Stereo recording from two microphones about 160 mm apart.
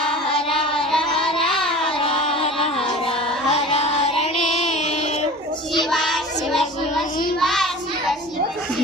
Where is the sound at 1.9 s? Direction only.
35° left (ahead or behind).